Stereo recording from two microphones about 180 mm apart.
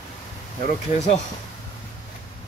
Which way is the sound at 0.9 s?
40° left (ahead or behind).